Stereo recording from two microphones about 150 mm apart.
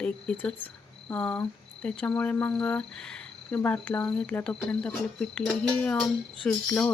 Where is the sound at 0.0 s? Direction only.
5° left (ahead or behind).